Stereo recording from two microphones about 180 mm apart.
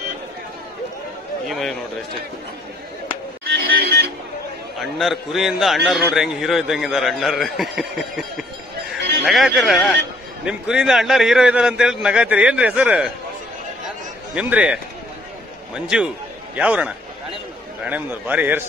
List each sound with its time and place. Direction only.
3.7 s a sound: 60° right (ahead or behind)
4.7 s a man's voice: centre (ahead or behind)
14.3 s a man's voice: 5° right (ahead or behind)